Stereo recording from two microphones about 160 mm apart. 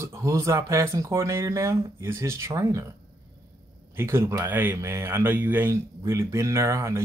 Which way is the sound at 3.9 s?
15° right (ahead or behind).